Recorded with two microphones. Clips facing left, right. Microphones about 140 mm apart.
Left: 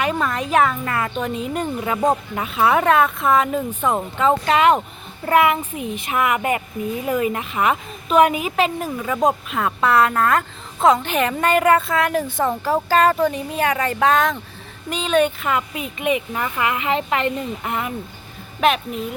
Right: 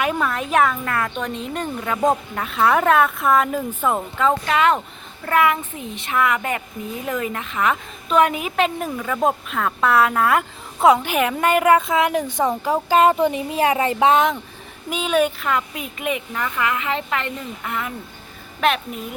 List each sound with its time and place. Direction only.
0.0 s a woman's voice: centre (ahead or behind)
3.9 s a child's voice: 10° left (ahead or behind)
5.2 s a child's voice: 20° left (ahead or behind)
7.0 s a woman's voice: 5° left (ahead or behind); by 14.3 s 20° right (ahead or behind)
14.8 s a woman's voice: 5° right (ahead or behind)
16.3 s a woman's voice: 20° left (ahead or behind)